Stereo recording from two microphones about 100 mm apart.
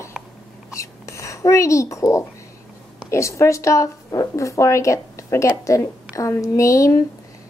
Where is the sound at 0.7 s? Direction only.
30° left (ahead or behind).